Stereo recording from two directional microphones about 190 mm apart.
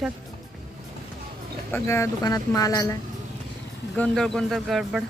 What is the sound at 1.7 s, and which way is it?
Speech, 15° left (ahead or behind).